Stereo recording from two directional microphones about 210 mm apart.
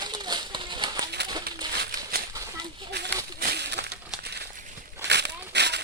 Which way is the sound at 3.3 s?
50° right (ahead or behind).